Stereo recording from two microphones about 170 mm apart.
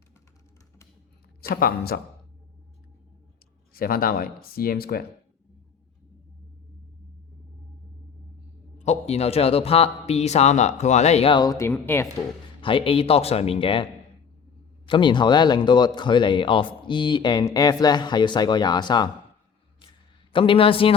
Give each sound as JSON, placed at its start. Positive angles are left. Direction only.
{"t": 1.4, "sound": "speech", "side_deg": 60}
{"t": 3.7, "sound": "speech", "side_deg": 60}
{"t": 8.8, "sound": "speech", "side_deg": 40}
{"t": 12.6, "sound": "speech", "side_deg": 30}
{"t": 14.8, "sound": "speech", "side_deg": 30}
{"t": 20.3, "sound": "speech", "side_deg": 30}